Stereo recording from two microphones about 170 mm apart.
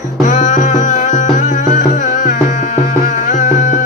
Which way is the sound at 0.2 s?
45° left (ahead or behind).